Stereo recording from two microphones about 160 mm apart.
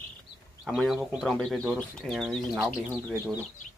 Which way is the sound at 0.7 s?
Centre (ahead or behind).